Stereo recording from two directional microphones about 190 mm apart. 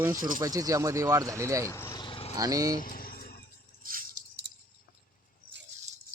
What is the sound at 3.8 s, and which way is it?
Rattle, 50° right (ahead or behind).